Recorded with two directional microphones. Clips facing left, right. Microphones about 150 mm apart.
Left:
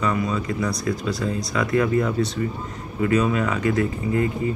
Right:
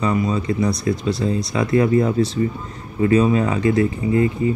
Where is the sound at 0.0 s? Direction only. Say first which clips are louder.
Right 3 dB; 30° right (ahead or behind).